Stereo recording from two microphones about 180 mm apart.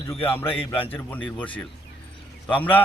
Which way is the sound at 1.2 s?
5° left (ahead or behind).